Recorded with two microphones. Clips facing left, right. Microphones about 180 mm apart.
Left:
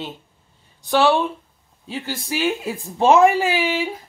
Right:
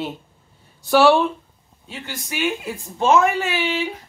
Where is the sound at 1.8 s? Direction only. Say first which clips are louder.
Left 5 dB; 35° left (ahead or behind).